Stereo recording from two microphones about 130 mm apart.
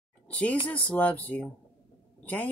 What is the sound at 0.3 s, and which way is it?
Speech, 10° left (ahead or behind).